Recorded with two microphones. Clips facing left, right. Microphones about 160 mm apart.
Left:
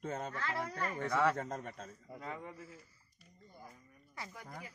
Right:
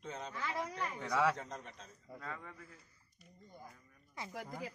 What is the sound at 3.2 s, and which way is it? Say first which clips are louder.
Speech: right 1 dB; 20° right (ahead or behind).